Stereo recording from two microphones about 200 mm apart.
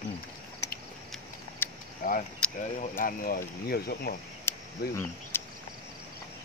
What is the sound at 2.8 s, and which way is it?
Speech, 45° left (ahead or behind).